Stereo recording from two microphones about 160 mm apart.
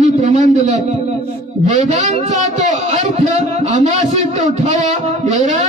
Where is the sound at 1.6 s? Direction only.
50° right (ahead or behind).